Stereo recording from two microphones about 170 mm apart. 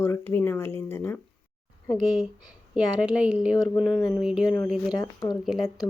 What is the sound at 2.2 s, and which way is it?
Speech, 5° right (ahead or behind).